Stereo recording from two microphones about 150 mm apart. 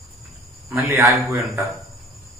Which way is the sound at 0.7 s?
10° right (ahead or behind).